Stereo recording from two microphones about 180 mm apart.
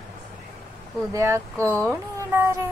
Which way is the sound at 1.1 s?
15° right (ahead or behind).